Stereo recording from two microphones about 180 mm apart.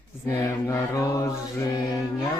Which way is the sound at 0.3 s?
15° left (ahead or behind).